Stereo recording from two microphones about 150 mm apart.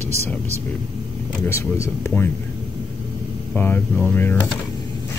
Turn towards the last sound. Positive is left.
turn(degrees=10)  # may be behind; listen again after turning